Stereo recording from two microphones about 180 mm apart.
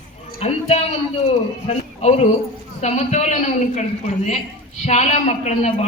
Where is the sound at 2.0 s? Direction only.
35° left (ahead or behind).